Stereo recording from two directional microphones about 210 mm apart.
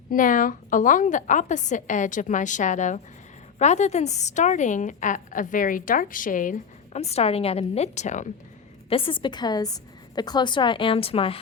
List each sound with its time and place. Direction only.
0.1 s a woman's voice: 40° left (ahead or behind)
8.9 s a woman's voice: 25° left (ahead or behind)